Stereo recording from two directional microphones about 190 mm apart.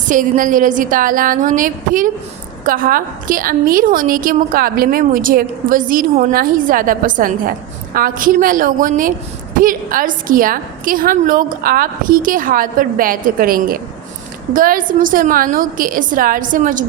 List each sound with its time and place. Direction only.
0.0 s a woman's voice: 45° right (ahead or behind)